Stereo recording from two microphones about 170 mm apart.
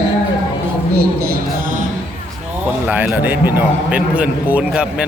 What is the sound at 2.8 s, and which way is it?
A man's voice, 10° right (ahead or behind).